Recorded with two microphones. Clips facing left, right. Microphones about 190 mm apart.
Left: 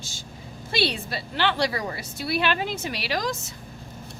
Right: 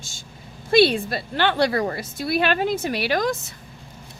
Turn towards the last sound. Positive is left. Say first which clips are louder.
# right 6 dB
turn(degrees=-55)  # may be behind; listen again after turning